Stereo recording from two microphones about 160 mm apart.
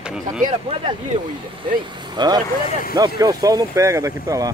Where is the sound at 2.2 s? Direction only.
30° right (ahead or behind).